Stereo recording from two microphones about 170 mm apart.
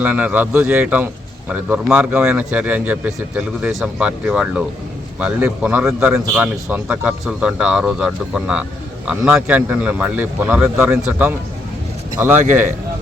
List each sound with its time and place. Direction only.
0.0 s a man's voice: 10° right (ahead or behind)